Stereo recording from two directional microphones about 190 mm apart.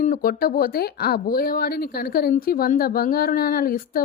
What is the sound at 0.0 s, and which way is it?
Speech, 45° left (ahead or behind).